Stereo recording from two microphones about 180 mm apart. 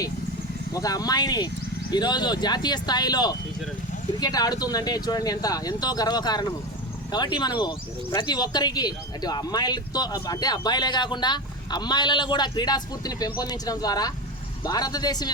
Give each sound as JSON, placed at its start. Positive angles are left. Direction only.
{"t": 0.7, "sound": "speech", "side_deg": 20}